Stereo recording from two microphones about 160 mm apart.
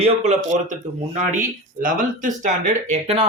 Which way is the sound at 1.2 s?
55° right (ahead or behind).